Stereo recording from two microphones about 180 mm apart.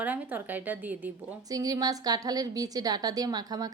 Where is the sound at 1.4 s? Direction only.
20° right (ahead or behind).